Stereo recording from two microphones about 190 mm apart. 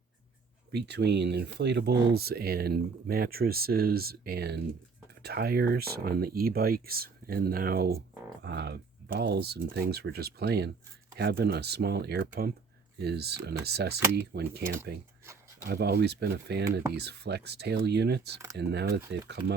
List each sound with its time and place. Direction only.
0.7 s speech: 60° right (ahead or behind)